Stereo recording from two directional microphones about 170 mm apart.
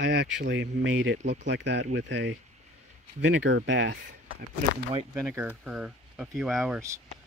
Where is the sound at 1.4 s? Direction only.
90° right.